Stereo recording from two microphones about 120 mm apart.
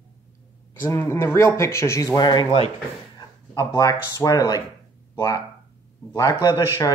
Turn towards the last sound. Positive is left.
turn(degrees=35)  # may be behind; listen again after turning